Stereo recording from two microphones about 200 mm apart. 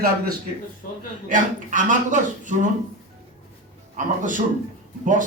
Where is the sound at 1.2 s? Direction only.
40° right (ahead or behind).